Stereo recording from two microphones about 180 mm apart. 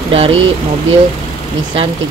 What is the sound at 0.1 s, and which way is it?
Speech, 30° right (ahead or behind).